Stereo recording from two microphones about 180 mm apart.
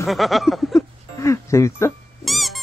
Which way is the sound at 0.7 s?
15° left (ahead or behind).